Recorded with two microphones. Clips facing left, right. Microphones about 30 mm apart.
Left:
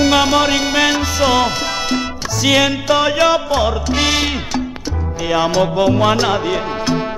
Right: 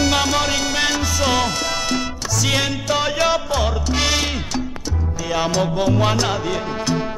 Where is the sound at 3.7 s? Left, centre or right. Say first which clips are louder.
Left 4 dB; centre.